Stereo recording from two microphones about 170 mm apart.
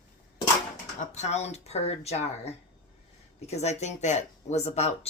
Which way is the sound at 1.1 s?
40° left (ahead or behind).